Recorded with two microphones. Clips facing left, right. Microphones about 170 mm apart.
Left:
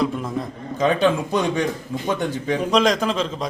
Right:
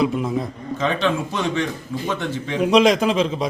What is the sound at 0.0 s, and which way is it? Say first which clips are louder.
Speech: right 3 dB; 5° right (ahead or behind).